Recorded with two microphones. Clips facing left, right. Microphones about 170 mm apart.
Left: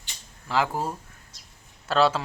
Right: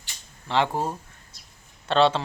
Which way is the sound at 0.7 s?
25° right (ahead or behind).